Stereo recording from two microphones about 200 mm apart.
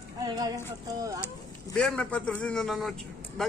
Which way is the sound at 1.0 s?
15° right (ahead or behind).